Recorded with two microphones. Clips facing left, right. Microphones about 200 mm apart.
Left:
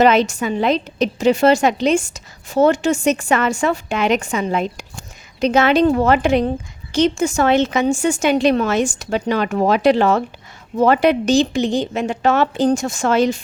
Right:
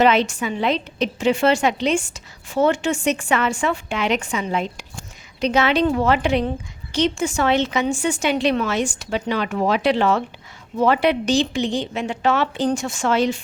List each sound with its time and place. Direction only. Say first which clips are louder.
0.0 s a woman's voice: left 3 dB; 40° left (ahead or behind)